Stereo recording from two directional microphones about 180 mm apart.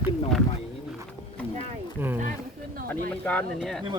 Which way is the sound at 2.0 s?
10° right (ahead or behind).